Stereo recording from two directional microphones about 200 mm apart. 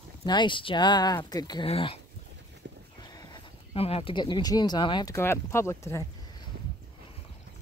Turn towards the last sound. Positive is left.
turn(degrees=15)  # may be behind; listen again after turning